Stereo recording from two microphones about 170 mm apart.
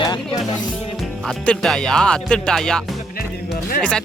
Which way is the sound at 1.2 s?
5° left (ahead or behind).